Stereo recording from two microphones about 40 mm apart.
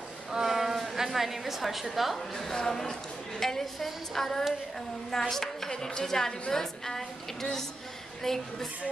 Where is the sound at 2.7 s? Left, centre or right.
Centre.